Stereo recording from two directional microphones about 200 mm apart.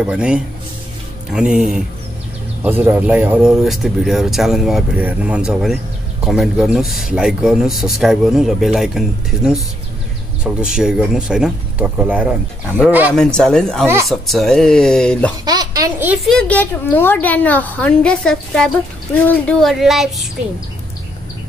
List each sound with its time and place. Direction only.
0.0 s speech: 5° right (ahead or behind)
13.1 s speech: 5° left (ahead or behind)
15.4 s speech: 20° right (ahead or behind)
16.3 s a woman's voice: 5° left (ahead or behind)